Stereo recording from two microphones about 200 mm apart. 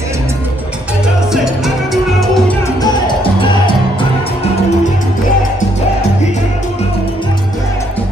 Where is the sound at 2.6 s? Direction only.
25° left (ahead or behind).